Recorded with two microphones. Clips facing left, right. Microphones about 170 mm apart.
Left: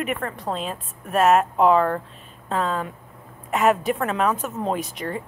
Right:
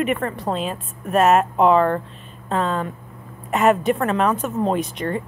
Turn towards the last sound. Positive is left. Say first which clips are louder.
# right 5 dB
turn(degrees=5)  # may be behind; listen again after turning